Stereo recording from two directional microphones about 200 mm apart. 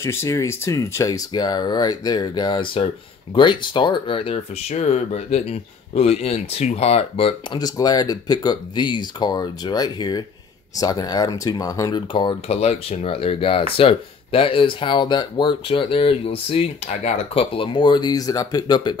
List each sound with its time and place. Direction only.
0.0 s speech: 15° left (ahead or behind)